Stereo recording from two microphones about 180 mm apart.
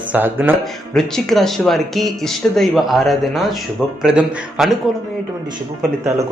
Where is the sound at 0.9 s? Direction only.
Centre (ahead or behind).